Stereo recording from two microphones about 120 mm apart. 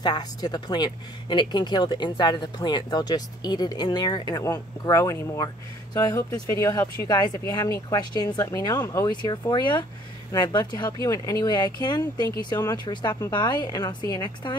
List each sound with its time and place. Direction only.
0.0 s speech: 35° left (ahead or behind)
7.1 s speech: 35° left (ahead or behind)
9.1 s speech: 40° left (ahead or behind)